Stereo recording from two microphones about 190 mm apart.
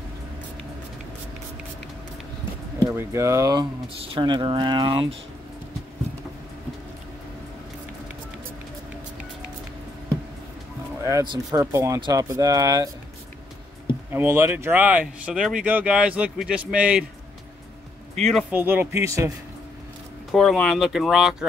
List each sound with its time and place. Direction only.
2.9 s speech: 15° right (ahead or behind)
11.1 s speech: 15° right (ahead or behind)
14.1 s speech: 15° right (ahead or behind)
18.3 s speech: 10° right (ahead or behind)
20.2 s speech: centre (ahead or behind)